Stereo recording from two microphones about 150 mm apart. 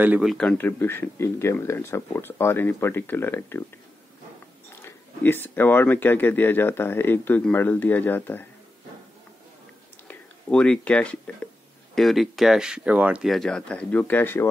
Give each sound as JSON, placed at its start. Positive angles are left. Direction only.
{"t": 0.0, "sound": "speech", "side_deg": -10}
{"t": 0.3, "sound": "speech", "side_deg": 5}
{"t": 4.8, "sound": "speech", "side_deg": 15}
{"t": 10.0, "sound": "speech", "side_deg": 5}